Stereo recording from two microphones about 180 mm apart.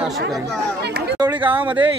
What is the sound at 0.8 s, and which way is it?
Chatter, 65° right (ahead or behind).